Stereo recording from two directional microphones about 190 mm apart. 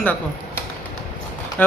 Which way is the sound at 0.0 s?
10° left (ahead or behind).